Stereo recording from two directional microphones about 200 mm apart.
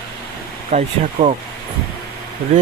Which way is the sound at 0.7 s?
35° right (ahead or behind).